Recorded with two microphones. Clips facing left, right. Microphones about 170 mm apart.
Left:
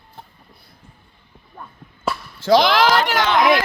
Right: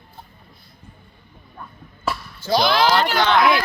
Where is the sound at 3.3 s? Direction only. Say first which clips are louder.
Even; 15° left (ahead or behind).